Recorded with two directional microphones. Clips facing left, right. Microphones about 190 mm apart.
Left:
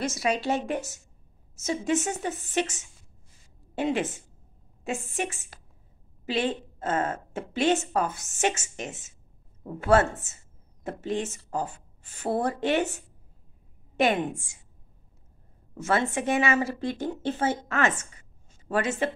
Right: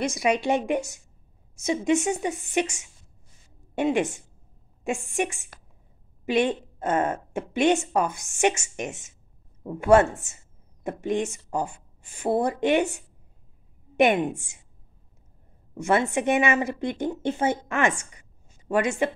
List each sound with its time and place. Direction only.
0.0 s a woman's voice: 15° right (ahead or behind)
15.8 s a woman's voice: 15° right (ahead or behind)